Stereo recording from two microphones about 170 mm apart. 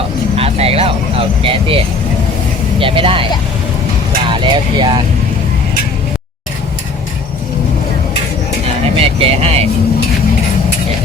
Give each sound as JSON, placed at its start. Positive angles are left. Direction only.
{"t": 0.3, "sound": "vehicle", "side_deg": -35}
{"t": 1.4, "sound": "speech", "side_deg": -35}
{"t": 4.4, "sound": "speech", "side_deg": -25}
{"t": 9.0, "sound": "speech", "side_deg": -35}